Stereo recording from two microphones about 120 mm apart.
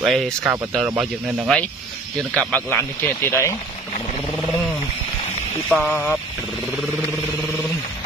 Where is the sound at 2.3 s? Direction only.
10° left (ahead or behind).